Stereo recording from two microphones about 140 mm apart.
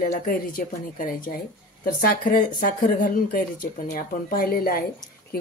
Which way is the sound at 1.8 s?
90° left.